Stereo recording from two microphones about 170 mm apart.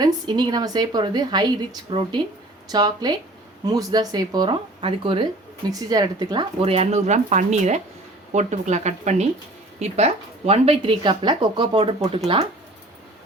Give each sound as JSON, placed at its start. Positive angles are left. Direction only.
{"t": 0.0, "sound": "a woman's voice", "side_deg": -25}
{"t": 5.7, "sound": "a woman's voice", "side_deg": -20}